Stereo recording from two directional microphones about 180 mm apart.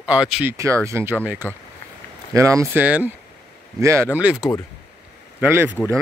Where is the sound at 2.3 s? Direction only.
15° right (ahead or behind).